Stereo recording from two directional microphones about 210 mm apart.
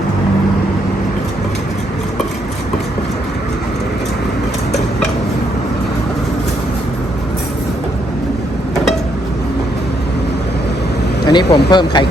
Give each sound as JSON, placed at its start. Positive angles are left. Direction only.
{"t": 11.3, "sound": "speech", "side_deg": 20}